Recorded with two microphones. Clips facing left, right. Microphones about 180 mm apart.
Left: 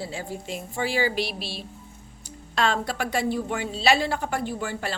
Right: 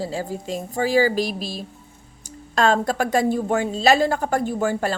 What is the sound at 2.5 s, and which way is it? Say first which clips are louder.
A woman's voice: right 6 dB; 45° right (ahead or behind).